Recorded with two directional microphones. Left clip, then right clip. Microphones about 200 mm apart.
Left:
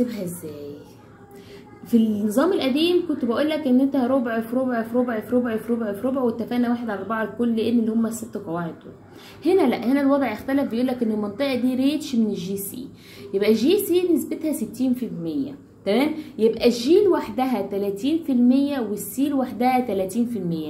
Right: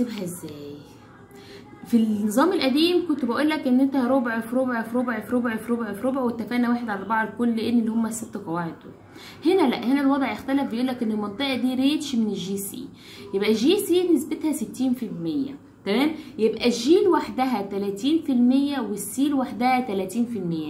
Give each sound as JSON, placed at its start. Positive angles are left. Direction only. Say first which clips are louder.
{"t": 0.0, "sound": "a woman's voice", "louder": "left 3 dB", "side_deg": -10}
{"t": 2.3, "sound": "a woman's voice", "louder": "even", "side_deg": -15}
{"t": 9.4, "sound": "a woman's voice", "louder": "left 1 dB", "side_deg": -10}